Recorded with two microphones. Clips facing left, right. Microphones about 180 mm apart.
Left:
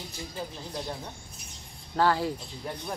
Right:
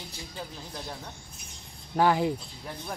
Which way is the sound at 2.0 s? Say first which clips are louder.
Right 2 dB; 15° right (ahead or behind).